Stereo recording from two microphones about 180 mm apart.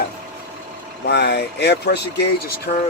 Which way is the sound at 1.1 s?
65° left (ahead or behind).